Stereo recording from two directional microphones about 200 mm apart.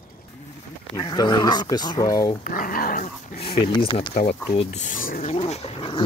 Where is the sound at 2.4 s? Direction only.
45° left (ahead or behind).